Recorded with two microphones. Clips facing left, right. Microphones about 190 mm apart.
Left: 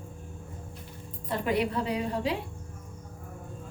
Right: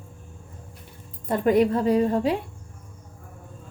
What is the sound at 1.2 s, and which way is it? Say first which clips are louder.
A woman's voice: right 8 dB; 45° right (ahead or behind).